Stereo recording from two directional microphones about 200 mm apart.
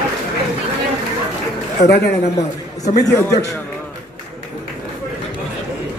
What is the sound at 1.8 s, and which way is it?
Speech, 55° left (ahead or behind).